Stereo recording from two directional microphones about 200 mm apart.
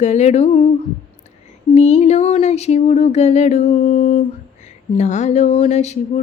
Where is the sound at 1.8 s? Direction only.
35° left (ahead or behind).